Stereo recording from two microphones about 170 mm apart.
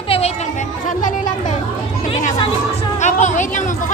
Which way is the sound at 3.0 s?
45° left (ahead or behind).